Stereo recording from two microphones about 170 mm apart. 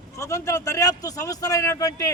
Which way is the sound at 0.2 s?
15° left (ahead or behind).